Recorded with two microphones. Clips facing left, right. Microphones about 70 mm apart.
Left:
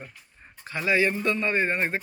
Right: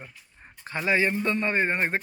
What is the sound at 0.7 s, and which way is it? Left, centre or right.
A man's voice, right.